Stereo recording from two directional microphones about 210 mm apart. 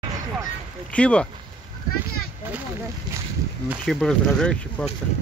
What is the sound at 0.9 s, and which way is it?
Speech, 5° left (ahead or behind).